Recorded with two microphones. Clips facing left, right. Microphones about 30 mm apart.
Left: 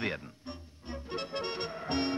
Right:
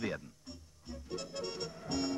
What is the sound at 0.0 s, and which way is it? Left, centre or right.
Music, left.